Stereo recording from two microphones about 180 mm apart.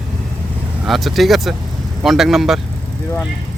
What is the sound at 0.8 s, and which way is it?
Speech, centre (ahead or behind).